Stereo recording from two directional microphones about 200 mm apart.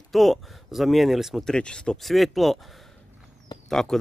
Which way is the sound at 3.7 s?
Centre (ahead or behind).